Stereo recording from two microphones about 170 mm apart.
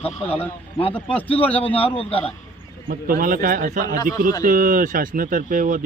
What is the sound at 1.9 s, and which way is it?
Speech, 35° left (ahead or behind).